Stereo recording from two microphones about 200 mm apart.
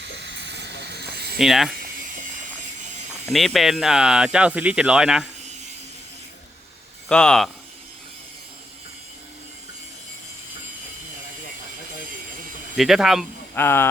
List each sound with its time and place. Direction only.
0.0 s a sound: 60° right (ahead or behind)
1.4 s speech: centre (ahead or behind)
3.2 s speech: centre (ahead or behind)
7.1 s speech: 5° left (ahead or behind)
12.7 s speech: centre (ahead or behind)
13.6 s speech: 10° left (ahead or behind)